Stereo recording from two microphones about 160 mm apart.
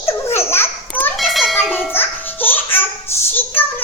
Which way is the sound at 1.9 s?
10° left (ahead or behind).